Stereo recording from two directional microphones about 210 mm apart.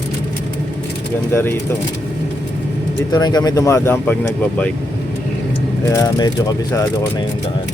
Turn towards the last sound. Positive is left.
turn(degrees=20)  # may be behind; listen again after turning